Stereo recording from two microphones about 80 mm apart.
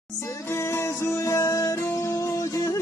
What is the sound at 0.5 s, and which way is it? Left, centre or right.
Music, left.